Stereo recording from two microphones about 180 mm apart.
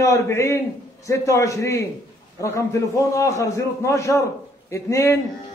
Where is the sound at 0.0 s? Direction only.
15° left (ahead or behind).